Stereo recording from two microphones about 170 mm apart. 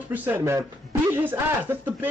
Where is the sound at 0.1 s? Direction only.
10° right (ahead or behind).